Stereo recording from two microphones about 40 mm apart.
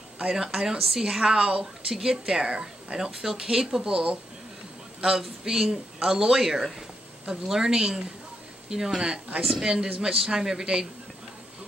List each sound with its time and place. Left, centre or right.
0.2 s a woman's voice: centre
5.4 s a woman's voice: centre